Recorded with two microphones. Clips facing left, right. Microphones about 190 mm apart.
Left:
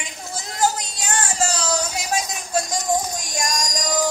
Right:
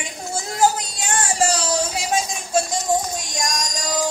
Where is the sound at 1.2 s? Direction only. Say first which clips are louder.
Right 4 dB; 30° right (ahead or behind).